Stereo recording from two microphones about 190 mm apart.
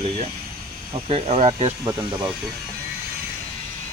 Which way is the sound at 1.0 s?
30° right (ahead or behind).